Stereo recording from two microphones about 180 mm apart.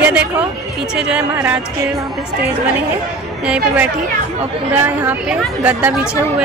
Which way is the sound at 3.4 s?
5° right (ahead or behind).